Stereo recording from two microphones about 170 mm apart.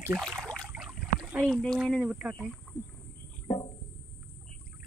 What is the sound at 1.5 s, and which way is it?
Speech, centre (ahead or behind).